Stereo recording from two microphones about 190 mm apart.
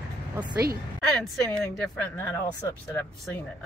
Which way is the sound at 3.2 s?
5° left (ahead or behind).